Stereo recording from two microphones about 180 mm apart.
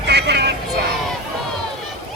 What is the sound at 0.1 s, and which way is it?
Vehicle, 65° right (ahead or behind).